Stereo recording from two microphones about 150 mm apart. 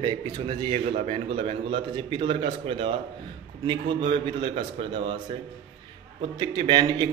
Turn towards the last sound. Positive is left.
turn(degrees=-30)  # may be behind; listen again after turning